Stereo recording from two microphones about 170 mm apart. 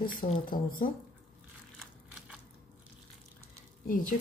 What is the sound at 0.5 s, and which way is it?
Speech, 55° left (ahead or behind).